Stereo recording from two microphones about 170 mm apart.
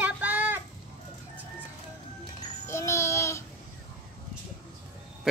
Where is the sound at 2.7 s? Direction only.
15° left (ahead or behind).